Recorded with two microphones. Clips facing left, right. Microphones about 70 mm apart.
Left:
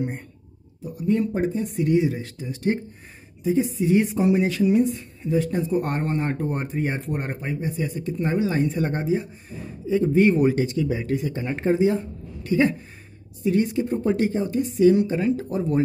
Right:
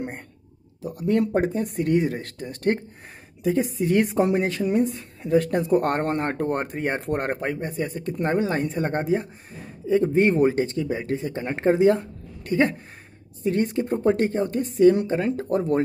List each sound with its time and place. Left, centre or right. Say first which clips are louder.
0.8 s speech: right 1 dB; right